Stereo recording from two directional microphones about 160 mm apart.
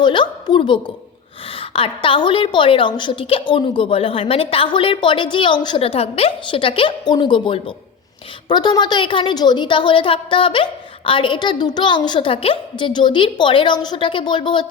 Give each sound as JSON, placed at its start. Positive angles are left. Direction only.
{"t": 0.0, "sound": "a woman's voice", "side_deg": 30}